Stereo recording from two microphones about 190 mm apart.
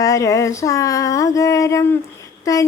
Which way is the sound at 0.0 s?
15° left (ahead or behind).